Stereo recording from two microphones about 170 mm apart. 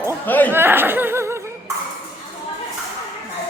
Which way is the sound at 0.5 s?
10° right (ahead or behind).